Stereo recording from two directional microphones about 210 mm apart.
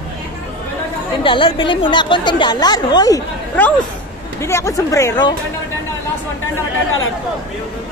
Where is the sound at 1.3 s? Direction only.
25° left (ahead or behind).